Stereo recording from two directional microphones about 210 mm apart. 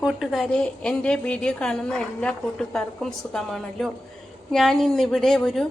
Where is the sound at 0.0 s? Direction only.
Centre (ahead or behind).